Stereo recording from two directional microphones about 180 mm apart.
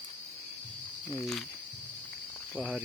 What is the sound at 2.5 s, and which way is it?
Speech, 5° right (ahead or behind).